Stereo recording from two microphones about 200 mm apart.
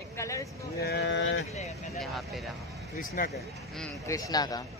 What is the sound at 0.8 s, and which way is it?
Speech, 60° left (ahead or behind).